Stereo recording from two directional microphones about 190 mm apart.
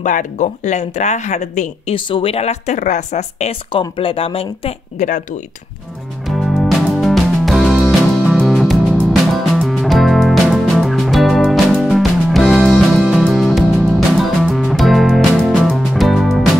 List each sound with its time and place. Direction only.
0.0 s speech: 45° left (ahead or behind)
2.0 s speech: 25° left (ahead or behind)
6.2 s music: centre (ahead or behind)